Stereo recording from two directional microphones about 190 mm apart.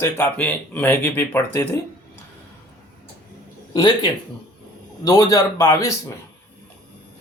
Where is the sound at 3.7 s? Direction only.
25° left (ahead or behind).